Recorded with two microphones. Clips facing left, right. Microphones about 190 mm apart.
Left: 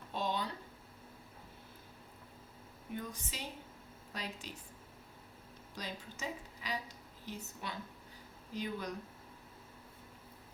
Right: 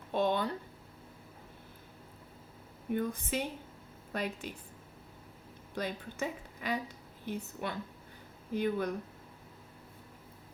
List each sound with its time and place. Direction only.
0.1 s a sound: 55° right (ahead or behind)
2.9 s a woman's voice: 55° right (ahead or behind)
5.7 s a woman's voice: 55° right (ahead or behind)